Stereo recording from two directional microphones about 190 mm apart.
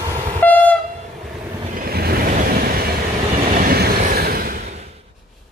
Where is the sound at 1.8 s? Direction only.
55° right (ahead or behind).